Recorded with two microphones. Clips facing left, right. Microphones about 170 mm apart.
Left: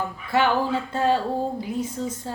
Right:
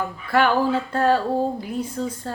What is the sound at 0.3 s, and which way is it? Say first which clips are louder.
Speech: right 2 dB; 20° left (ahead or behind).